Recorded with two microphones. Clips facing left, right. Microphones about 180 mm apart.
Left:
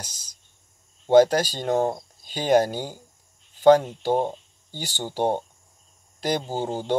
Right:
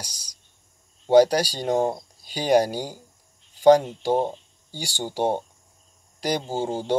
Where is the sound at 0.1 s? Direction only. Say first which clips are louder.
Right 1 dB; 50° left (ahead or behind).